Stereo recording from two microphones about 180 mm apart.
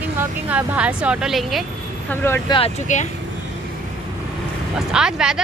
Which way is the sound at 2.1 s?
15° left (ahead or behind).